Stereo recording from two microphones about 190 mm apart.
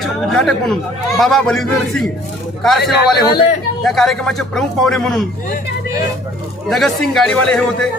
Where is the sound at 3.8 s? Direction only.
Centre (ahead or behind).